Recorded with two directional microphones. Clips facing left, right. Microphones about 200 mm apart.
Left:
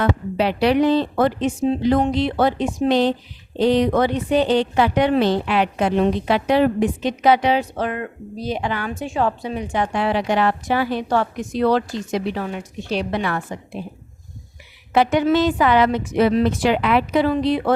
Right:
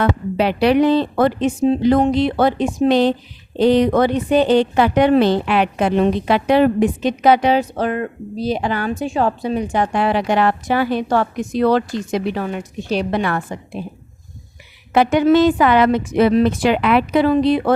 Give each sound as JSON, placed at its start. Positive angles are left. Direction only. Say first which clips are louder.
{"t": 0.0, "sound": "a woman's voice", "louder": "right 2 dB", "side_deg": -60}
{"t": 1.9, "sound": "speech", "louder": "right 3 dB", "side_deg": -50}
{"t": 2.9, "sound": "a woman's voice", "louder": "right 3 dB", "side_deg": -60}
{"t": 14.9, "sound": "a woman's voice", "louder": "right 4 dB", "side_deg": -55}